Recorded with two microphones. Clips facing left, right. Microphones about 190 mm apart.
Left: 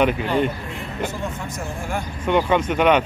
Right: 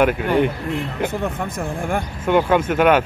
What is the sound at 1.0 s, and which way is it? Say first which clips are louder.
Speech: right 2 dB; 60° right (ahead or behind).